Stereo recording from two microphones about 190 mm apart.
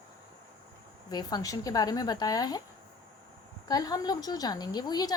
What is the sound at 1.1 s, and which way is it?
A woman's voice, 20° left (ahead or behind).